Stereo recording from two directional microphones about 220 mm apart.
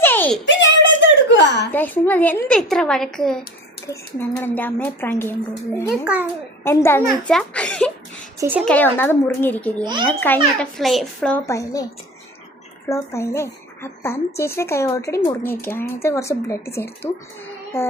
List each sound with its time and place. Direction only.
0.0 s a sound: 10° left (ahead or behind)
0.4 s a sound: 55° left (ahead or behind)
1.7 s a woman's voice: 10° left (ahead or behind)
6.7 s speech: 10° left (ahead or behind)
8.4 s speech: 10° right (ahead or behind)
8.6 s a woman's voice: 5° left (ahead or behind)
9.8 s a child's voice: 20° right (ahead or behind)
10.1 s speech: 10° left (ahead or behind)
11.4 s a woman's voice: 15° left (ahead or behind)
12.9 s a woman's voice: 15° left (ahead or behind)